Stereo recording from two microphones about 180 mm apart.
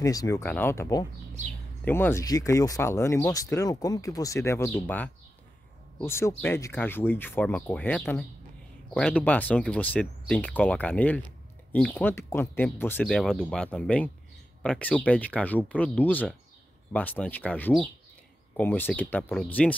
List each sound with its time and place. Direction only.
0.0 s speech: 20° left (ahead or behind)